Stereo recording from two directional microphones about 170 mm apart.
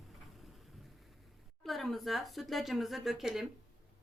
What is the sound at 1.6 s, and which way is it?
Speech, centre (ahead or behind).